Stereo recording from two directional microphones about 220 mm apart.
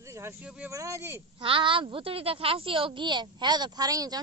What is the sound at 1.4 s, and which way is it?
Speech, 25° right (ahead or behind).